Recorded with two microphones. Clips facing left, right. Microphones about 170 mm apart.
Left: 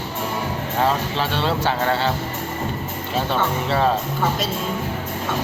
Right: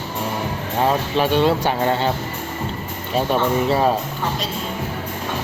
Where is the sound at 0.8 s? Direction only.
15° right (ahead or behind).